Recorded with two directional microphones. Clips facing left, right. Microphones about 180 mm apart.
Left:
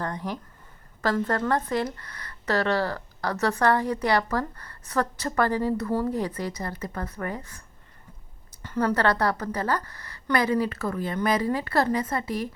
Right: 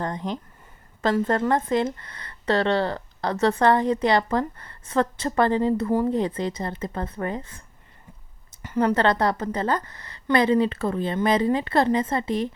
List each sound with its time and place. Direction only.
0.0 s a woman's voice: 20° right (ahead or behind)
8.6 s a woman's voice: 20° right (ahead or behind)